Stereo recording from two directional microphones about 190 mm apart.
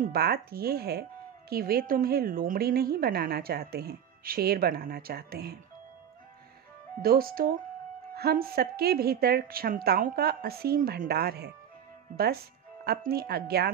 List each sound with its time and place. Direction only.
0.0 s a woman's voice: 55° right (ahead or behind)
7.0 s a woman's voice: 50° right (ahead or behind)